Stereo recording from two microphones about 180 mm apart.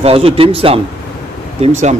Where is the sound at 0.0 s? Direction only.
30° right (ahead or behind).